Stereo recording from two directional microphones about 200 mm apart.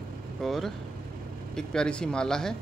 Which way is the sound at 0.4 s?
Centre (ahead or behind).